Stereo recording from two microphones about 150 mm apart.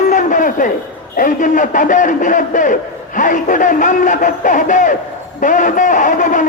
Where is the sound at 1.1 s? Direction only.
60° left (ahead or behind).